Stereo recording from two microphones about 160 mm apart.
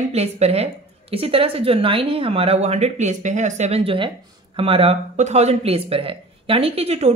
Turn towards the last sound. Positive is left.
turn(degrees=-40)  # may be behind; listen again after turning